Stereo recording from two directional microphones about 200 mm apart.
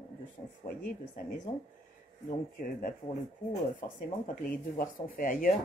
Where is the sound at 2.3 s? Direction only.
40° left (ahead or behind).